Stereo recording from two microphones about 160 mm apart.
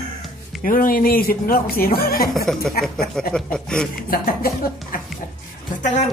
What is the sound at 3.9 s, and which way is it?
Speech, 65° left (ahead or behind).